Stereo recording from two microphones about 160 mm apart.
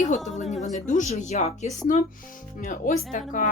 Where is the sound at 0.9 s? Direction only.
45° left (ahead or behind).